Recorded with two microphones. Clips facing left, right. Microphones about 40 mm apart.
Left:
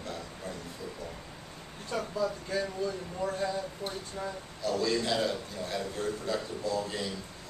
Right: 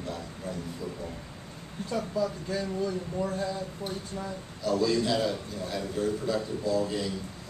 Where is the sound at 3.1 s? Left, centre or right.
Centre.